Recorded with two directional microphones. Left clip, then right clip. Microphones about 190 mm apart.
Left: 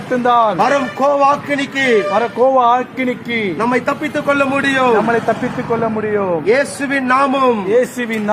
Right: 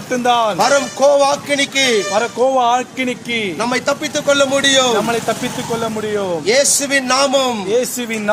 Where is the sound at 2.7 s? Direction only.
30° right (ahead or behind).